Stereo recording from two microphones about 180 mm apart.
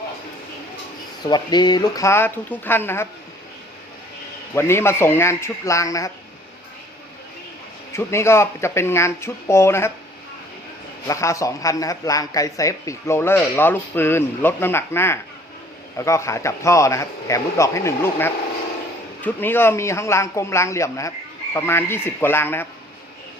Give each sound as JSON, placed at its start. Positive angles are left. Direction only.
{"t": 1.2, "sound": "speech", "side_deg": 25}
{"t": 4.5, "sound": "speech", "side_deg": 15}
{"t": 7.9, "sound": "speech", "side_deg": 15}
{"t": 11.1, "sound": "speech", "side_deg": 15}